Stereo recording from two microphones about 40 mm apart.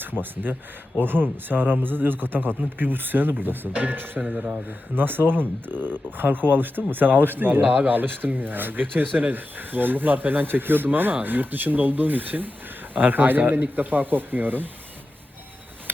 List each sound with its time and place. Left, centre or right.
0.0 s speech: right
4.4 s speech: right
4.9 s speech: right